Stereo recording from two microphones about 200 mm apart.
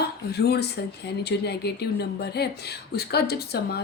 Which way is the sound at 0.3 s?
55° left (ahead or behind).